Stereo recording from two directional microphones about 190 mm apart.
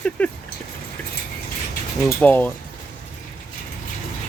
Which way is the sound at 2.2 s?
10° left (ahead or behind).